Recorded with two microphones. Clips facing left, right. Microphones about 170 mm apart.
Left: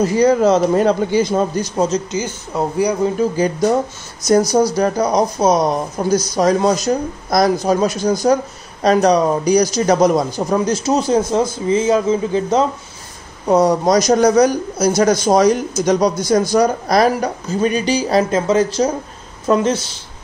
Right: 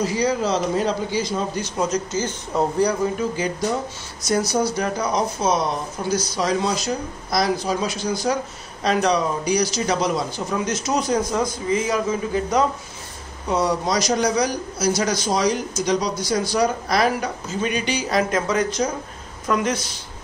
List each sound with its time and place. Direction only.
0.0 s speech: 50° left (ahead or behind)
2.1 s speech: 10° left (ahead or behind)
3.0 s a man's voice: 35° left (ahead or behind)
13.5 s a man's voice: 45° left (ahead or behind); by 19.9 s 30° left (ahead or behind)